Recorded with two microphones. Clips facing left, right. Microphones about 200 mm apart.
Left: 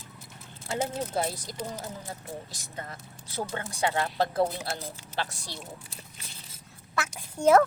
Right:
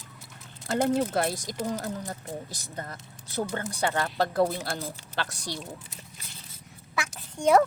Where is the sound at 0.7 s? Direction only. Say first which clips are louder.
Right 5 dB; 65° right (ahead or behind); by 1.5 s 80° right.